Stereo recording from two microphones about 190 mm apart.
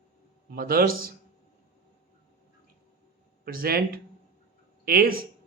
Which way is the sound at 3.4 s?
50° right (ahead or behind).